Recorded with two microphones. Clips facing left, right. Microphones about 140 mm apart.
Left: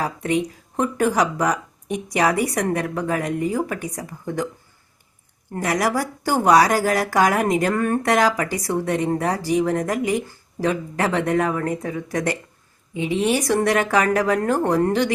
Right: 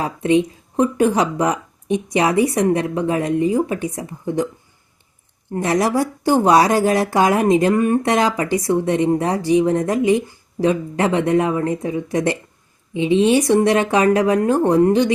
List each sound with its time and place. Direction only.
0.0 s speech: 25° right (ahead or behind)
5.5 s speech: 25° right (ahead or behind)